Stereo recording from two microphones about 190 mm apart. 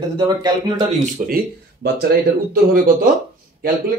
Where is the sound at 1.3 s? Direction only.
55° right (ahead or behind).